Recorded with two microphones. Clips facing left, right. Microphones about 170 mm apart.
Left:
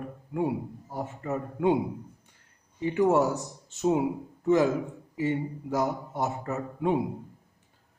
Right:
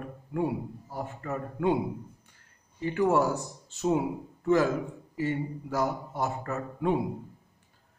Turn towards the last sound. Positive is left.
turn(degrees=20)  # may be behind; listen again after turning